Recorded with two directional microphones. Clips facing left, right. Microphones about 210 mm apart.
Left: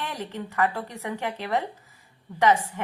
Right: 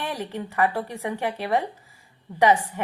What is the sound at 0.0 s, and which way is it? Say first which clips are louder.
A woman's voice: right 3 dB; 15° right (ahead or behind).